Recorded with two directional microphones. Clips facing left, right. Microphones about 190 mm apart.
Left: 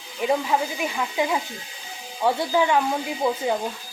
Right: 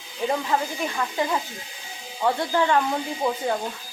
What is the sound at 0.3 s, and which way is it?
Speech, 10° left (ahead or behind).